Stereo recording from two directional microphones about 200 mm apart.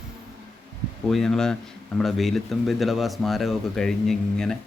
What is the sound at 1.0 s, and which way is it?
Speech, centre (ahead or behind).